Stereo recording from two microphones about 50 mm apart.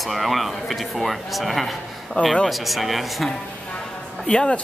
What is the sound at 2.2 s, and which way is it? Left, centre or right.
Speech, left.